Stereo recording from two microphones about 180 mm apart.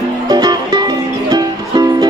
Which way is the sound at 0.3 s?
25° right (ahead or behind).